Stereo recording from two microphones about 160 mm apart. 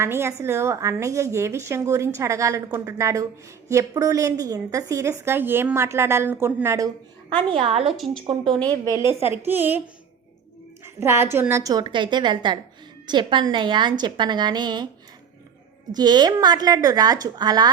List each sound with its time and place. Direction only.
0.0 s a woman's voice: 15° right (ahead or behind)
7.5 s a woman's voice: 35° right (ahead or behind)
7.9 s speech: centre (ahead or behind)
9.0 s a woman's voice: 30° left (ahead or behind)
9.3 s a woman's voice: 15° right (ahead or behind)
11.0 s a woman's voice: 15° right (ahead or behind)
15.9 s a woman's voice: 25° right (ahead or behind)